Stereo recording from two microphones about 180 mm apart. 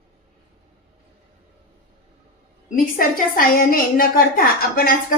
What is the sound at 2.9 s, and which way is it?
A woman's voice, 50° left (ahead or behind).